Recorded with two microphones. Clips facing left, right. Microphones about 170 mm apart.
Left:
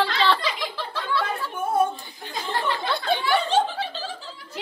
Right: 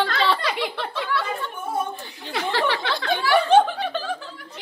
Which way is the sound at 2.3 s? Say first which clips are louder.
Right 4 dB; 80° right.